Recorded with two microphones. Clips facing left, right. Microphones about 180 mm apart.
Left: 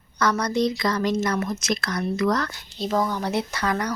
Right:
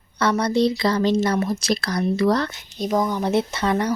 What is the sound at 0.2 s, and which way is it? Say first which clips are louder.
Speech: right 3 dB; 30° right (ahead or behind).